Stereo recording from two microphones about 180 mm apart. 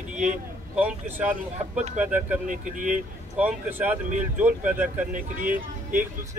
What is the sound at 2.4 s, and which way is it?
Speech, 45° right (ahead or behind).